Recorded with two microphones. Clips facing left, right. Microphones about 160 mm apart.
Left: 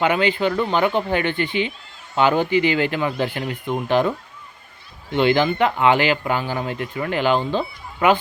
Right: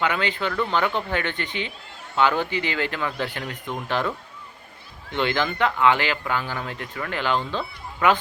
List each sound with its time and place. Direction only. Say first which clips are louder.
0.0 s speech: left 6 dB; 20° left (ahead or behind)
5.1 s speech: left 7 dB; 15° left (ahead or behind)